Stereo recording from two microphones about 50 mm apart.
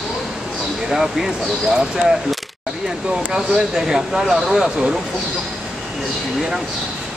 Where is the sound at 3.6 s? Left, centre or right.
Centre.